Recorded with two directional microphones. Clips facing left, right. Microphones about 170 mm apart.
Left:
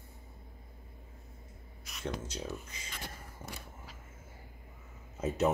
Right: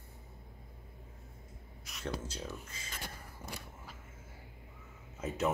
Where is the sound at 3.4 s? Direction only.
20° left (ahead or behind).